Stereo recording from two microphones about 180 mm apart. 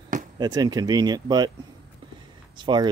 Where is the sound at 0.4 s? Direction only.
20° right (ahead or behind).